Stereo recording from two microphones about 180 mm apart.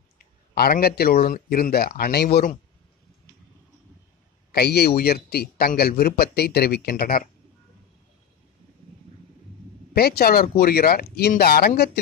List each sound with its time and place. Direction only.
0.6 s a man's voice: 60° left (ahead or behind)
4.5 s a man's voice: 65° left (ahead or behind)
9.9 s a man's voice: 60° left (ahead or behind)